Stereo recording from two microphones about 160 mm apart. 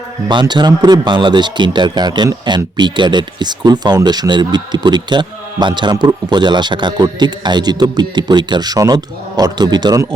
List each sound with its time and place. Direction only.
0.3 s speech: 30° right (ahead or behind)